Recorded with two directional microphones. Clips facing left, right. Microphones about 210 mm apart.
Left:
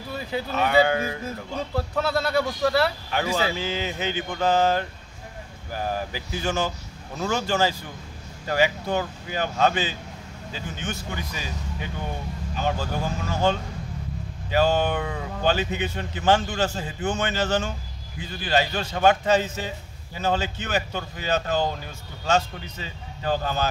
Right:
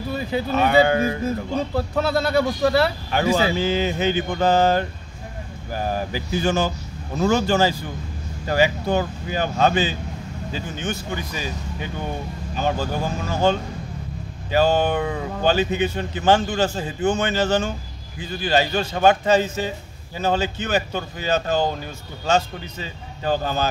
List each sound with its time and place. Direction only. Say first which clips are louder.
0.5 s speech: right 3 dB; 35° right (ahead or behind)
2.0 s speech: right 4 dB; 20° right (ahead or behind)
3.3 s speech: right 6 dB; 40° right (ahead or behind)
12.6 s speech: right 3 dB; 30° right (ahead or behind)
23.2 s speech: right 3 dB; 30° right (ahead or behind)